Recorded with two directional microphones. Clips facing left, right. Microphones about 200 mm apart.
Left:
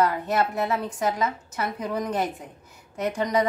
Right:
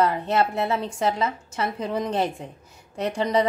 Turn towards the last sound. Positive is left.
turn(degrees=-30)  # may be behind; listen again after turning